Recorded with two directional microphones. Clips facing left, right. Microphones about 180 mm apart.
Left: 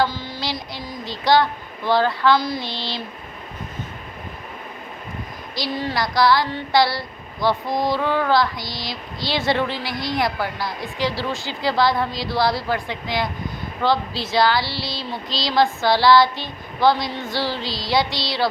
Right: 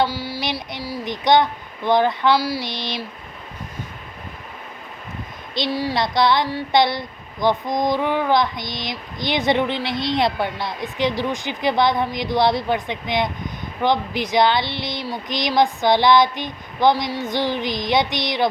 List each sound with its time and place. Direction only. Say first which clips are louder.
0.0 s a sound: right 1 dB; 10° right (ahead or behind)
1.0 s speech: right 1 dB; 20° right (ahead or behind)
5.6 s speech: right 3 dB; 20° right (ahead or behind)